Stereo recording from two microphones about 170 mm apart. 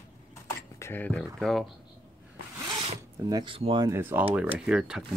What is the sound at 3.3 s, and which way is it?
Speech, 30° right (ahead or behind).